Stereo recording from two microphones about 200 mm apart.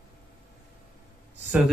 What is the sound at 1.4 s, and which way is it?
Speech, 5° right (ahead or behind).